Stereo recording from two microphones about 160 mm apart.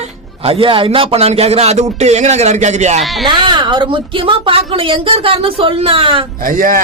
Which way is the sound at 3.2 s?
30° right (ahead or behind).